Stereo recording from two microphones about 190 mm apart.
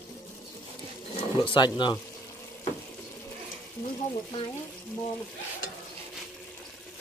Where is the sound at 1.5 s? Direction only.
25° left (ahead or behind).